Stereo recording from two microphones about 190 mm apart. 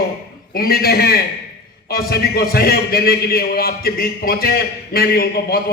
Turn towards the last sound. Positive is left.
turn(degrees=55)  # may be behind; listen again after turning